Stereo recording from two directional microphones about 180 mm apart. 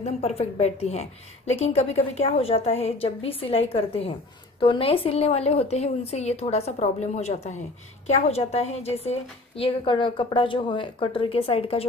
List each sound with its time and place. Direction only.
0.0 s a woman's voice: 35° left (ahead or behind)